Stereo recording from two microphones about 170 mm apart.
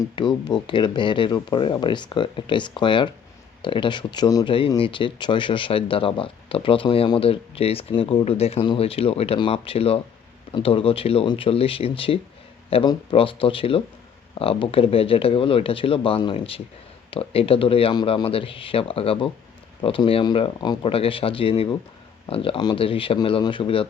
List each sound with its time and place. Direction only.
0.0 s speech: 25° left (ahead or behind)